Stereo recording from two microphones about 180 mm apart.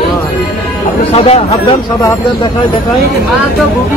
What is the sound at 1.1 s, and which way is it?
Speech, 35° left (ahead or behind).